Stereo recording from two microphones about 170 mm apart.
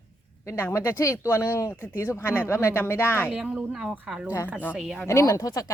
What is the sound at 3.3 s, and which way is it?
Speech, 5° right (ahead or behind).